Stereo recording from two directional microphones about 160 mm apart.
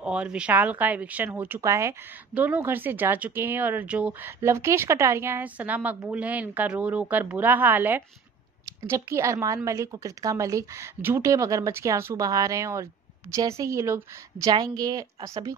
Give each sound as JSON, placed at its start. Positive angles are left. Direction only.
{"t": 0.0, "sound": "speech", "side_deg": -5}